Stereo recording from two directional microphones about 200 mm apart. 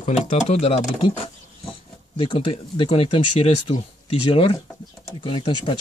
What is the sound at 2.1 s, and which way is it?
Speech, 25° left (ahead or behind).